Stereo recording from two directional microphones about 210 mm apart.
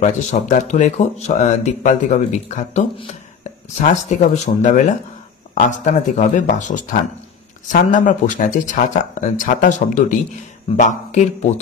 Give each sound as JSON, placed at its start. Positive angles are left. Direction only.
{"t": 0.0, "sound": "speech", "side_deg": 35}
{"t": 3.8, "sound": "speech", "side_deg": 35}